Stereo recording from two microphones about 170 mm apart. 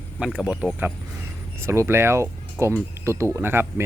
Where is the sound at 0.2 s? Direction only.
5° right (ahead or behind).